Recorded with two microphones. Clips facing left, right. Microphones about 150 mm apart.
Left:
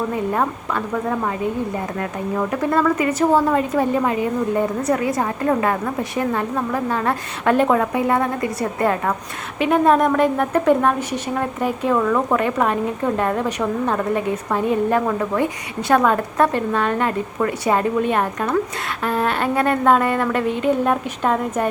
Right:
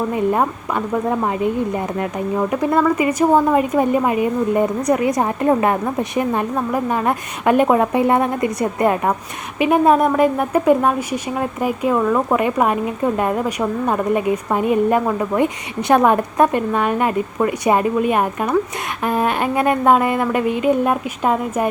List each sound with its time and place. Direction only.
2.0 s speech: 15° right (ahead or behind)